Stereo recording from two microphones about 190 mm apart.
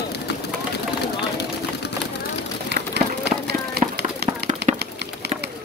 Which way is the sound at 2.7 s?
60° right (ahead or behind).